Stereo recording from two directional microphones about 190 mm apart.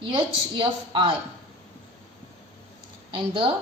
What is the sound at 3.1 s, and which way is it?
Speech, 25° right (ahead or behind).